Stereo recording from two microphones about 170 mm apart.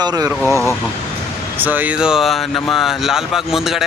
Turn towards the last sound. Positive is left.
turn(degrees=0)  # may be behind; listen again after turning